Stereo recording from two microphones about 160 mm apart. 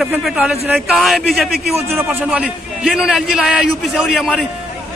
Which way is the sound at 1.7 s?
15° right (ahead or behind).